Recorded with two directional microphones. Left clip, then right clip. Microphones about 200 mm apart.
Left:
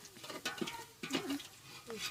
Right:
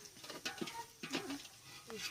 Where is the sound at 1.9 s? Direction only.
40° right (ahead or behind).